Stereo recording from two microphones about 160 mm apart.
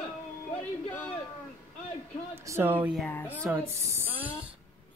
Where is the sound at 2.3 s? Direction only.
15° right (ahead or behind).